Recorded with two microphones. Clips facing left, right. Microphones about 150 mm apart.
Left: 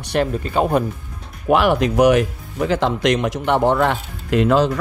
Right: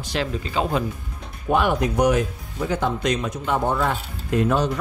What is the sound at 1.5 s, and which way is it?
Speech, 85° left.